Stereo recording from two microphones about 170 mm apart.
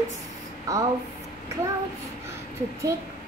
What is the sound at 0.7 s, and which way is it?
Speech, 20° right (ahead or behind).